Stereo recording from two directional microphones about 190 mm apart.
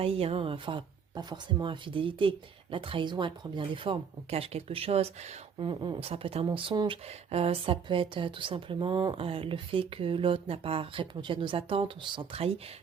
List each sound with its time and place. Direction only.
0.0 s speech: 30° right (ahead or behind)